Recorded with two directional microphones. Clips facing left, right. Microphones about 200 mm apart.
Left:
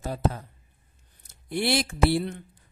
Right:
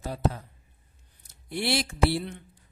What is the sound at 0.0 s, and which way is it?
A man's voice, 50° left (ahead or behind).